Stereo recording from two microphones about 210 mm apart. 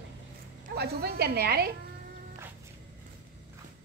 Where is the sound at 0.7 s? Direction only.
50° right (ahead or behind).